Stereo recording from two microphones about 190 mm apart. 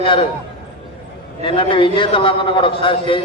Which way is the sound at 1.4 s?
25° left (ahead or behind).